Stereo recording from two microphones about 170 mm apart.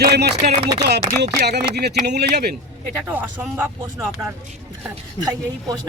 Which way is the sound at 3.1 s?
10° right (ahead or behind).